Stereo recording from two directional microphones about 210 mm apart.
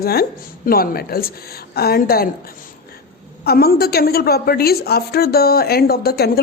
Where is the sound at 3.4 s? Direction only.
50° left (ahead or behind).